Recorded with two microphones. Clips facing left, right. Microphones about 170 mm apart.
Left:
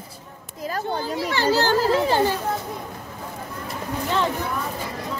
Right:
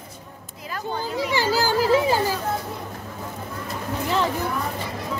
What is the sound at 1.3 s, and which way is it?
A child's voice, 10° right (ahead or behind).